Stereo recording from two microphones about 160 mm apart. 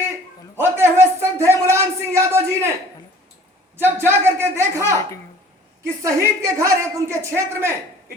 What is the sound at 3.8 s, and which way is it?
Speech, 15° right (ahead or behind).